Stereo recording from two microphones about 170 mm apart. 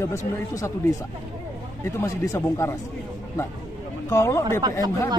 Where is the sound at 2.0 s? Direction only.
15° left (ahead or behind).